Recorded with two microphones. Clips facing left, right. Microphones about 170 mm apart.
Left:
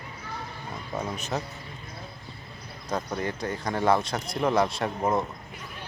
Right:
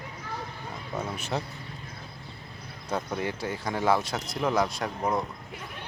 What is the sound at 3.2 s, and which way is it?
Speech, 10° right (ahead or behind).